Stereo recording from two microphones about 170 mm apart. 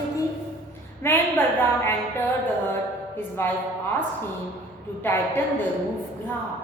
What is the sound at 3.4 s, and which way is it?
Speech, 15° left (ahead or behind).